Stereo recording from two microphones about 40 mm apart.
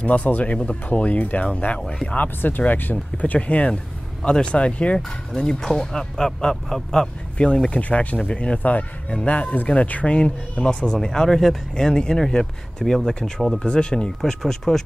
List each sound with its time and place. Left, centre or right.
0.0 s speech: left
2.6 s speech: left
3.3 s speech: left
3.7 s speech: left
5.3 s speech: centre
7.3 s speech: left
10.0 s speech: left
11.0 s speech: centre
13.6 s speech: left
14.2 s speech: centre